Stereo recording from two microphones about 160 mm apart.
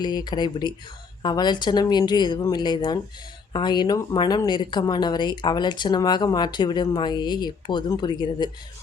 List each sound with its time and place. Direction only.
0.0 s speech: 25° left (ahead or behind)